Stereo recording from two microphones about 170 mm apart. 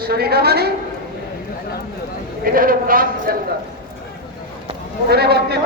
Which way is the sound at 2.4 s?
55° right (ahead or behind).